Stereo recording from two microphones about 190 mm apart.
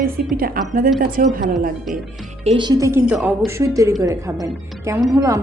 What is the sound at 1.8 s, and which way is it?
Speech, centre (ahead or behind).